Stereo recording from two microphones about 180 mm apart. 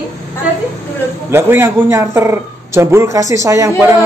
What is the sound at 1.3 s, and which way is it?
A man's voice, 10° right (ahead or behind).